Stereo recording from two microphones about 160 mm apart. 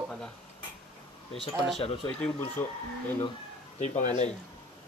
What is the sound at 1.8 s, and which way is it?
Speech, 35° left (ahead or behind).